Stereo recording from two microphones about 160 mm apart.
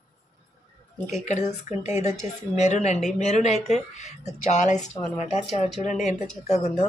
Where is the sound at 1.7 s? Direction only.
45° left (ahead or behind).